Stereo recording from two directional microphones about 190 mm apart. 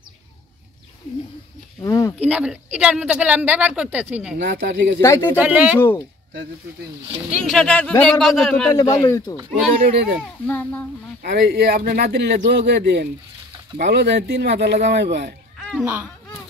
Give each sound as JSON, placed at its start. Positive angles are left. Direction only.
{"t": 1.8, "sound": "speech", "side_deg": 15}
{"t": 2.2, "sound": "speech", "side_deg": -5}
{"t": 4.4, "sound": "speech", "side_deg": -60}
{"t": 5.0, "sound": "a child's voice", "side_deg": 15}
{"t": 5.4, "sound": "speech", "side_deg": -10}
{"t": 5.8, "sound": "a child's voice", "side_deg": 10}
{"t": 7.4, "sound": "speech", "side_deg": 5}
{"t": 8.7, "sound": "speech", "side_deg": 20}
{"t": 9.8, "sound": "speech", "side_deg": -50}
{"t": 10.4, "sound": "a child's voice", "side_deg": 10}
{"t": 11.2, "sound": "speech", "side_deg": -60}
{"t": 15.8, "sound": "speech", "side_deg": -10}